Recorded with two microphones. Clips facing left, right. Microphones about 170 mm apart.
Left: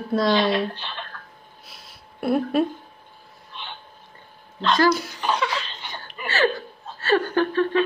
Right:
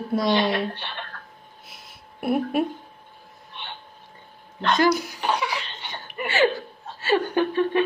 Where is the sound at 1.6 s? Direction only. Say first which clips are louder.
Even; 20° right (ahead or behind).